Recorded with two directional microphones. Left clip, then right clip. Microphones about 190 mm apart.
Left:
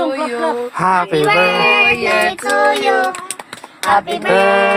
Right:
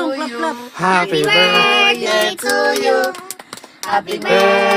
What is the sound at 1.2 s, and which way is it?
Child singing, 5° right (ahead or behind).